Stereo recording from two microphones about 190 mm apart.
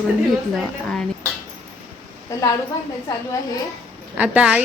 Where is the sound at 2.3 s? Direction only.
15° left (ahead or behind).